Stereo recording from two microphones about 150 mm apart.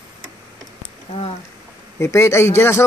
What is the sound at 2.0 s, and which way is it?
Speech, 15° left (ahead or behind).